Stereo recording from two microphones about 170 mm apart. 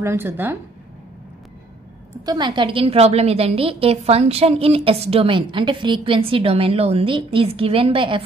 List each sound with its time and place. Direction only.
0.0 s a woman's voice: 15° right (ahead or behind)
2.2 s a woman's voice: 25° right (ahead or behind)